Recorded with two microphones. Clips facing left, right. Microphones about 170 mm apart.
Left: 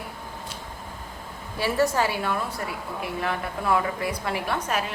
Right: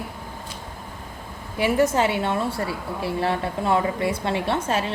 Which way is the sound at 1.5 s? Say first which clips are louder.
Right 3 dB; 20° right (ahead or behind).